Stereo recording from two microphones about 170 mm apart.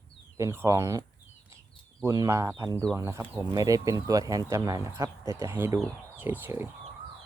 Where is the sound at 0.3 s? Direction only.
15° right (ahead or behind).